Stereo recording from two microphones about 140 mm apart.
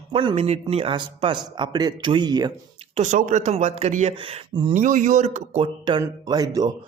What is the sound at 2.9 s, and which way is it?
Speech, 60° right (ahead or behind).